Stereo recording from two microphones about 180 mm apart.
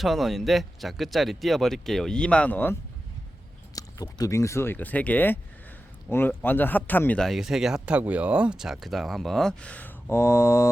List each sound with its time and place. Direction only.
0.0 s speech: centre (ahead or behind)
3.8 s speech: 20° left (ahead or behind)